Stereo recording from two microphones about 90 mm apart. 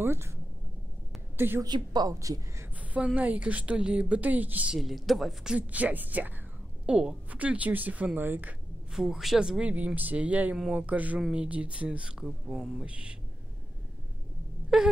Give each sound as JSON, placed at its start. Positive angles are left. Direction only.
{"t": 0.0, "sound": "speech", "side_deg": -30}
{"t": 1.3, "sound": "a sound", "side_deg": -25}
{"t": 1.6, "sound": "a woman's voice", "side_deg": -50}
{"t": 2.1, "sound": "a woman's voice", "side_deg": -35}
{"t": 2.8, "sound": "a sound", "side_deg": -15}
{"t": 3.2, "sound": "a woman's voice", "side_deg": -15}
{"t": 4.7, "sound": "speech", "side_deg": 0}
{"t": 5.6, "sound": "a woman's voice", "side_deg": -15}
{"t": 8.9, "sound": "a woman's voice", "side_deg": -5}
{"t": 12.5, "sound": "speech", "side_deg": 5}
{"t": 12.8, "sound": "a woman's voice", "side_deg": -10}
{"t": 14.7, "sound": "a woman's voice", "side_deg": -5}